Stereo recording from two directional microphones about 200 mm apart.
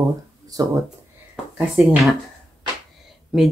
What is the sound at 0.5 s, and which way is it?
Speech, 20° right (ahead or behind).